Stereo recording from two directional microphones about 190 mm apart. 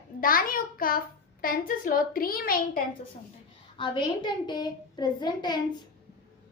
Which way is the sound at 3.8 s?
25° left (ahead or behind).